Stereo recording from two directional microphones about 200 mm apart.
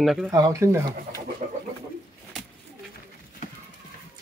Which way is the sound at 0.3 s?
15° right (ahead or behind).